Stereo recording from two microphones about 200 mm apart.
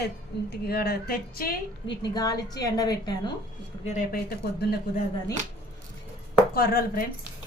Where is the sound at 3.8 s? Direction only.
35° left (ahead or behind).